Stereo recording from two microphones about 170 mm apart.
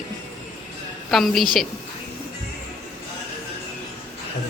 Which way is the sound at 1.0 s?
Centre (ahead or behind).